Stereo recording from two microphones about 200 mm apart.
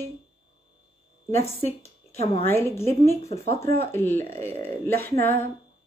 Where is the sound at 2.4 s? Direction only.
10° left (ahead or behind).